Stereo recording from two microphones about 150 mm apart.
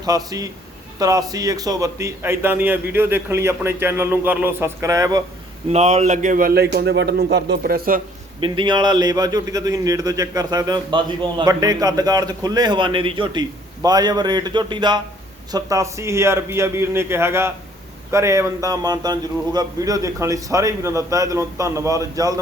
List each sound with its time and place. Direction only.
0.0 s a man's voice: 25° right (ahead or behind)
5.7 s speech: 45° right (ahead or behind); by 8.0 s 75° right (ahead or behind)
8.4 s a man's voice: 30° right (ahead or behind)